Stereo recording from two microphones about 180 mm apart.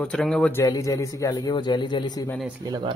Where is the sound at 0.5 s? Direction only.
20° left (ahead or behind).